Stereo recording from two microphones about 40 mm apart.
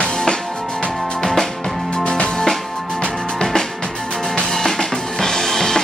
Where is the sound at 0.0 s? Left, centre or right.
Centre.